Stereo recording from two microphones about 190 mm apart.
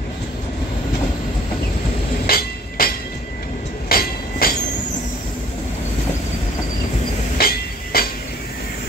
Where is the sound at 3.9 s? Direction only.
50° left (ahead or behind).